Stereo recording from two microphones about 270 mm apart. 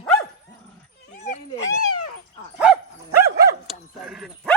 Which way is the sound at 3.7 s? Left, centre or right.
Centre.